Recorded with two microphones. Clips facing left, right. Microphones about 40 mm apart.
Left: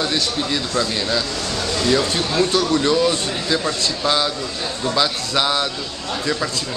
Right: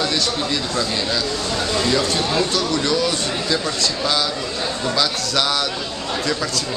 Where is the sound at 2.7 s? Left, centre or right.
Left.